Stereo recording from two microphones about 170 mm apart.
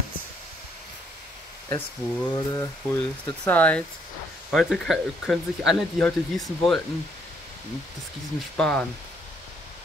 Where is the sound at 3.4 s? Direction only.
10° left (ahead or behind).